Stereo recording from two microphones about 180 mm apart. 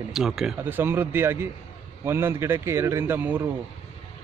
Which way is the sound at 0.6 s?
10° right (ahead or behind).